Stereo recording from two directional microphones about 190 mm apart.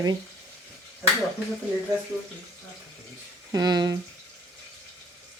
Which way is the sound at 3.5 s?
20° right (ahead or behind).